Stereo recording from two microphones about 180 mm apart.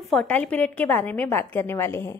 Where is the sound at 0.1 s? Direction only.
5° left (ahead or behind).